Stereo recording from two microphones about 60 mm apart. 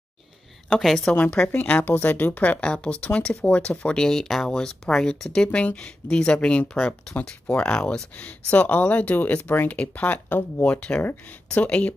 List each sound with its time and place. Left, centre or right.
0.7 s a woman's voice: centre
1.5 s speech: left